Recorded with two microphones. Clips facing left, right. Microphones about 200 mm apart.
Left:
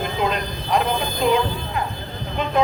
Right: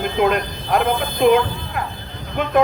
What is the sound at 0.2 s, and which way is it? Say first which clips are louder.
Speech: right 8 dB; 55° right (ahead or behind).